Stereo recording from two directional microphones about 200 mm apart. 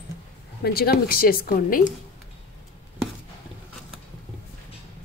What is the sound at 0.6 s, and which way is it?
A woman's voice, 50° left (ahead or behind).